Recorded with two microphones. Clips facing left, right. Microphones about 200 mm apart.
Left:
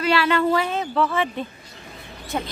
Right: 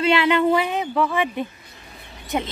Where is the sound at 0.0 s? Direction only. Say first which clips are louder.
Right 2 dB; 20° right (ahead or behind).